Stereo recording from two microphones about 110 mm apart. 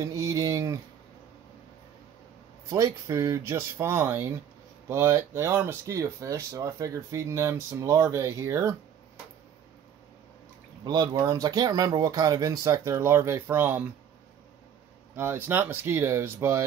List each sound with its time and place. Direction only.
0.0 s speech: 30° right (ahead or behind)
2.7 s speech: 25° right (ahead or behind)
10.9 s speech: 35° right (ahead or behind); by 13.8 s 20° right (ahead or behind)
15.1 s speech: 20° right (ahead or behind)